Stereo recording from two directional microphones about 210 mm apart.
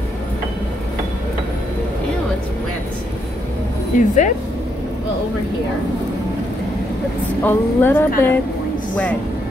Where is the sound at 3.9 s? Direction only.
40° left (ahead or behind).